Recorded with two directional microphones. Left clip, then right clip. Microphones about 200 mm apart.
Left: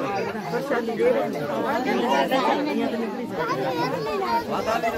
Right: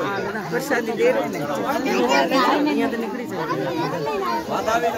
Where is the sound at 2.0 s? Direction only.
35° right (ahead or behind).